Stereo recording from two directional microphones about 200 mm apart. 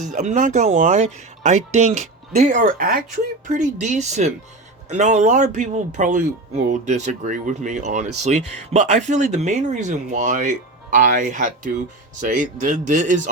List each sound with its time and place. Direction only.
0.0 s speech: 35° right (ahead or behind)